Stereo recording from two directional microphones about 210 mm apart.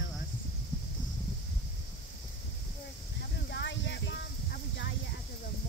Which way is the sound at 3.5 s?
60° left (ahead or behind).